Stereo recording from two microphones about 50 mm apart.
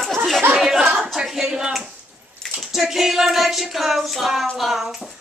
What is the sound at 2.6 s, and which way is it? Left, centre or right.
Child singing, centre.